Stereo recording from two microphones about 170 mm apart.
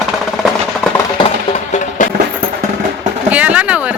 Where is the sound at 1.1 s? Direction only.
35° left (ahead or behind).